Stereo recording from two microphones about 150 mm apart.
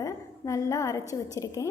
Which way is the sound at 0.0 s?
20° left (ahead or behind).